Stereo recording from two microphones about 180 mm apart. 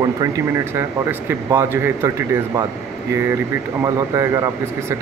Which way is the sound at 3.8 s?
15° right (ahead or behind).